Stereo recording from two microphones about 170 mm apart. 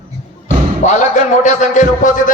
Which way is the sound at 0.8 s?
45° left (ahead or behind).